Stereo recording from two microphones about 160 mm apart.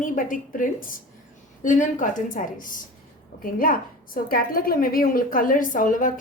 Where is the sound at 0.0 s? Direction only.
55° left (ahead or behind).